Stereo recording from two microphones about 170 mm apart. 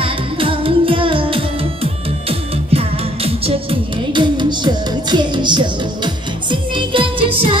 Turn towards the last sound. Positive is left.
turn(degrees=-30)  # may be behind; listen again after turning